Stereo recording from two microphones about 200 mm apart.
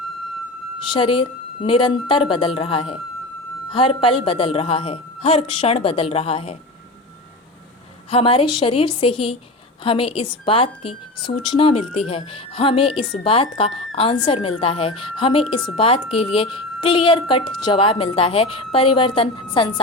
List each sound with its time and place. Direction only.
0.9 s a woman's voice: 25° left (ahead or behind)
8.1 s a woman's voice: 25° left (ahead or behind)